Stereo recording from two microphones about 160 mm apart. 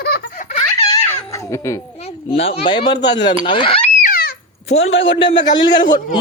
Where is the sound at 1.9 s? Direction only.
40° left (ahead or behind).